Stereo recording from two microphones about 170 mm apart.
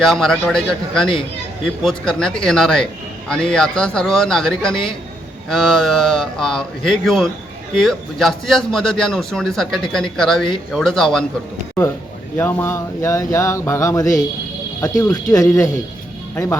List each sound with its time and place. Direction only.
0.0 s a man's voice: centre (ahead or behind)
12.4 s a sound: 10° left (ahead or behind)
14.8 s speech: 20° left (ahead or behind)